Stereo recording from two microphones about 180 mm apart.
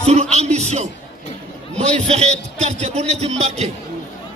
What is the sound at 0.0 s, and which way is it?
Music, 35° right (ahead or behind).